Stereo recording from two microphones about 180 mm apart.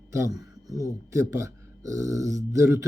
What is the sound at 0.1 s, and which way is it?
Speech, 15° right (ahead or behind).